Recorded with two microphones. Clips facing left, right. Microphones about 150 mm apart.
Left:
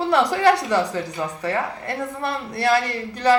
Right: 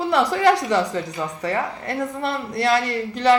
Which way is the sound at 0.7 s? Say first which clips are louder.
Even; 20° right (ahead or behind).